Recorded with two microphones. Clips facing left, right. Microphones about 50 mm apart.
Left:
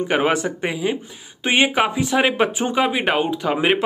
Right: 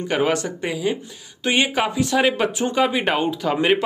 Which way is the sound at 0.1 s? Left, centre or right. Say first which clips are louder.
Even; centre.